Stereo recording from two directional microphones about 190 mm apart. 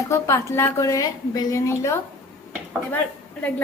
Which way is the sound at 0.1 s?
15° left (ahead or behind).